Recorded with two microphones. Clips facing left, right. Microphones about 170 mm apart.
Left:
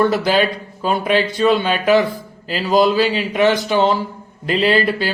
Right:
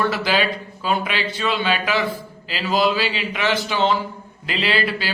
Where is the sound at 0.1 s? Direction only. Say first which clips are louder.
Left 5 dB; 45° left (ahead or behind).